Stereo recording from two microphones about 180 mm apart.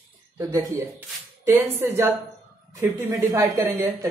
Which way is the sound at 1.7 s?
15° right (ahead or behind).